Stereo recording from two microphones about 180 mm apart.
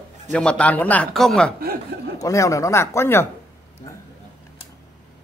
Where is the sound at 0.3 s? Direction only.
5° left (ahead or behind).